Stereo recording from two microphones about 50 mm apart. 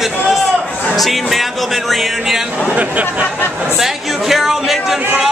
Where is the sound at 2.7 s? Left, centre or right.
Right.